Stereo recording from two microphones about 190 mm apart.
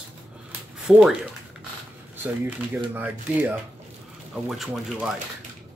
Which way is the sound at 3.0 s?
10° right (ahead or behind).